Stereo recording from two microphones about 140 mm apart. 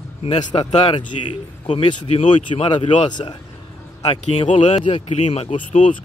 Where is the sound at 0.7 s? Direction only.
50° left (ahead or behind).